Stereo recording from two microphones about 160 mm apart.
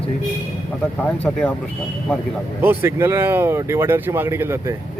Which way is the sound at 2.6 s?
15° right (ahead or behind).